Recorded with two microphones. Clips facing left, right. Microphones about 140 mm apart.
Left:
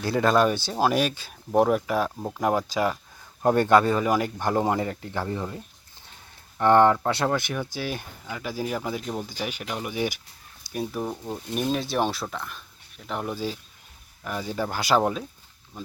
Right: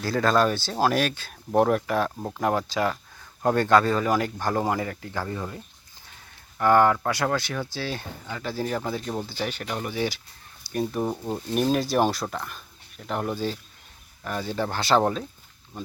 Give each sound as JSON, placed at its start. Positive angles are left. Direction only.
{"t": 0.0, "sound": "speech", "side_deg": 15}
{"t": 4.4, "sound": "speech", "side_deg": 20}
{"t": 6.6, "sound": "speech", "side_deg": 25}
{"t": 10.7, "sound": "speech", "side_deg": 5}
{"t": 11.0, "sound": "speech", "side_deg": -10}
{"t": 11.5, "sound": "speech", "side_deg": 0}